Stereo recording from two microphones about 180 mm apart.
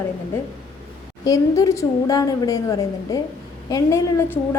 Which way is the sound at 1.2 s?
20° left (ahead or behind).